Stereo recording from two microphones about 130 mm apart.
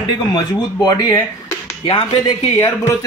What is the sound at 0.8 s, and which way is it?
Speech, 30° left (ahead or behind).